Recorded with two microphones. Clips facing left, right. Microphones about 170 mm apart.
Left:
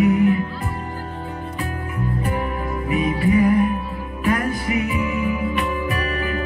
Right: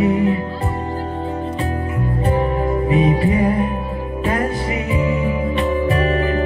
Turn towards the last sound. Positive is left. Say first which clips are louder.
# right 7 dB
turn(degrees=-30)  # may be behind; listen again after turning